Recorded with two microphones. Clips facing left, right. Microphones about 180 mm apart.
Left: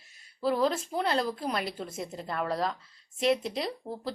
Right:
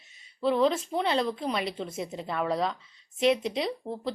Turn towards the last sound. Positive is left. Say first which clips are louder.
# right 3 dB
turn(degrees=0)  # may be behind; listen again after turning